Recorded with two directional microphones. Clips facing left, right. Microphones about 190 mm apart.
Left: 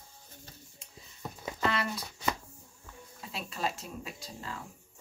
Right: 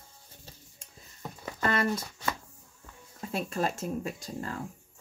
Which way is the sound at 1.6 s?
50° right (ahead or behind).